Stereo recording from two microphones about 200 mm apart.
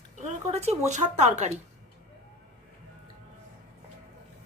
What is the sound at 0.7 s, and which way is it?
Speech, 35° right (ahead or behind).